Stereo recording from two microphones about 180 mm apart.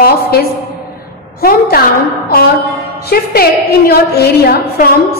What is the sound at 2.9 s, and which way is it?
A woman's voice, 60° left (ahead or behind).